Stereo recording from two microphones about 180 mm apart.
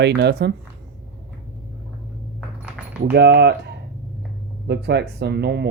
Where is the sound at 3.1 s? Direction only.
65° right (ahead or behind).